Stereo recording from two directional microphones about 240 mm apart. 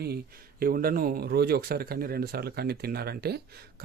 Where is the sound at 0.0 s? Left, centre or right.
Right.